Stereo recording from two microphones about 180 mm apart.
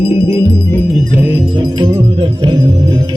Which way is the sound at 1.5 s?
30° right (ahead or behind).